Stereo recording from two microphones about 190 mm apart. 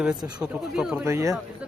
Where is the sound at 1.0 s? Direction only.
15° right (ahead or behind).